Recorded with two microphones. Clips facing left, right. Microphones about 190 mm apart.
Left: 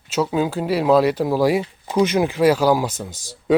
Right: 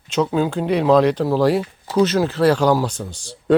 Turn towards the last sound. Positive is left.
turn(degrees=40)  # may be behind; listen again after turning